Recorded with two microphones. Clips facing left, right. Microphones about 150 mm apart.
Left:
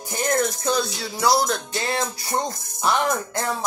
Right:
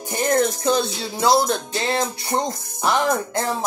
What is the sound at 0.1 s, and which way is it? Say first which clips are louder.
Music: right 3 dB; 25° right (ahead or behind).